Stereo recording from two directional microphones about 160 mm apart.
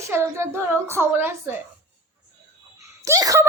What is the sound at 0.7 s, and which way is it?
Speech, 15° right (ahead or behind).